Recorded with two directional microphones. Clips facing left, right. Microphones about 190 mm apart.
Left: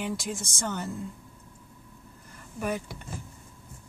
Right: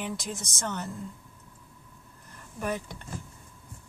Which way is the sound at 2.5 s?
5° left (ahead or behind).